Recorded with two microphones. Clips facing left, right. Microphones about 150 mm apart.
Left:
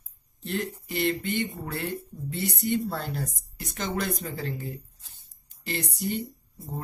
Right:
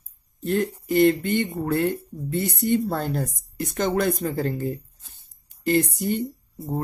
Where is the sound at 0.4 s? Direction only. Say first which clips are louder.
Right 8 dB; 50° right (ahead or behind).